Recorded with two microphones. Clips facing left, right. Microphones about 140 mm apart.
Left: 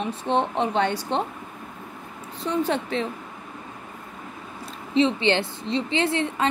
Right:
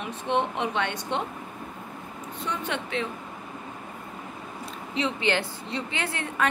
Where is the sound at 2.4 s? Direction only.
35° left (ahead or behind).